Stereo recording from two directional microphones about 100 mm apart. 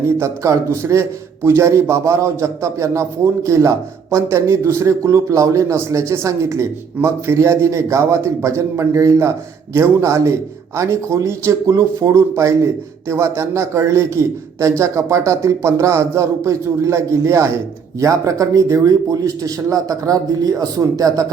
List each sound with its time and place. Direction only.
0.2 s a man's voice: 30° right (ahead or behind)